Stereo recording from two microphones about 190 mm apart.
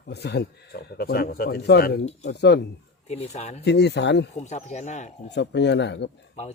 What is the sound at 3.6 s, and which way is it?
Speech, 65° left (ahead or behind).